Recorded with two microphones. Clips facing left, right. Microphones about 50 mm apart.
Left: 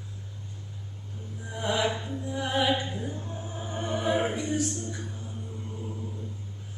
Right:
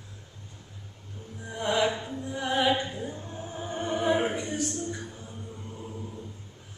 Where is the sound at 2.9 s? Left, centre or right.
Centre.